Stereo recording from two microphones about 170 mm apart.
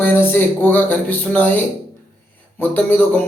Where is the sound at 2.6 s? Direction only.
10° left (ahead or behind).